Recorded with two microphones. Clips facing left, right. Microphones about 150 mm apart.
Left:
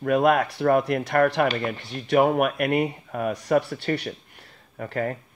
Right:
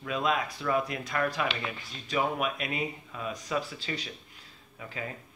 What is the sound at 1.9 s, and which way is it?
Speech, 65° left (ahead or behind).